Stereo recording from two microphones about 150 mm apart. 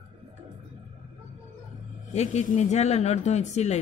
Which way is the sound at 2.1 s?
55° left (ahead or behind).